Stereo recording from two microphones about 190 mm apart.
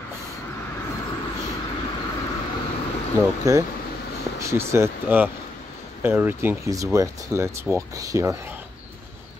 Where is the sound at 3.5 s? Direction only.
15° right (ahead or behind).